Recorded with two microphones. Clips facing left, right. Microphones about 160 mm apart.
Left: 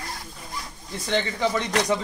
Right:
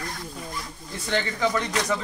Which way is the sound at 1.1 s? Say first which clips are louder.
Left 1 dB; 25° left (ahead or behind).